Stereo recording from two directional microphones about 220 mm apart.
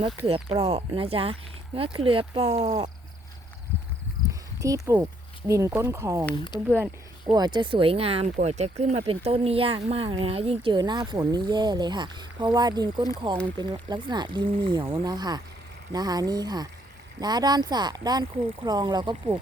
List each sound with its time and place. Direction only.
0.3 s speech: 25° right (ahead or behind)
4.3 s a sound: 15° right (ahead or behind)
5.5 s speech: 15° right (ahead or behind)